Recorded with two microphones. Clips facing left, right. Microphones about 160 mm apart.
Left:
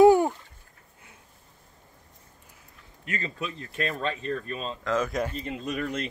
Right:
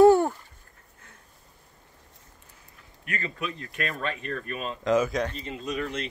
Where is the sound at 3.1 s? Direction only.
25° left (ahead or behind).